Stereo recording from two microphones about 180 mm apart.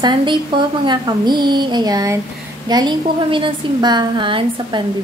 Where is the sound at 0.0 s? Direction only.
25° right (ahead or behind).